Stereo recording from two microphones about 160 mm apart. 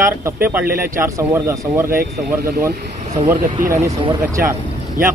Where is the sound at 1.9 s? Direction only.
65° right (ahead or behind).